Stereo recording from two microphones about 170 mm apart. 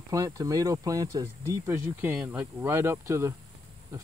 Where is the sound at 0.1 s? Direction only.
20° right (ahead or behind).